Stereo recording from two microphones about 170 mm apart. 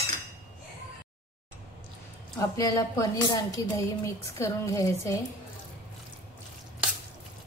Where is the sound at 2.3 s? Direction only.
20° left (ahead or behind).